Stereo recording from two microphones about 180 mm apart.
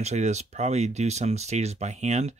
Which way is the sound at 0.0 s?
40° right (ahead or behind).